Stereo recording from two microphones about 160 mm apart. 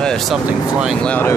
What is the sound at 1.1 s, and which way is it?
Speech, 10° left (ahead or behind).